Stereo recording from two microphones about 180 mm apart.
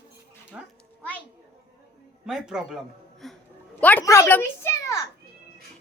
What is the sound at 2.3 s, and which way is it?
Speech, 5° right (ahead or behind).